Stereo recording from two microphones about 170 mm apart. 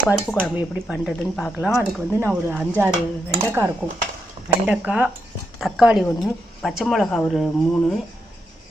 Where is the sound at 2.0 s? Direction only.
10° right (ahead or behind).